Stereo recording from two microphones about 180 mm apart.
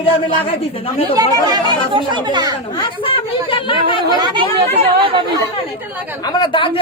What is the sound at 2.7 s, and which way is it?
Speech, 25° left (ahead or behind).